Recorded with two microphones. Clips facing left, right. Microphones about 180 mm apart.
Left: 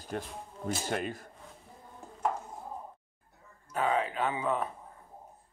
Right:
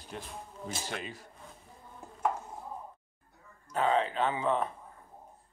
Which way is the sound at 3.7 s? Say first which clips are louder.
Right 2 dB; 10° left (ahead or behind).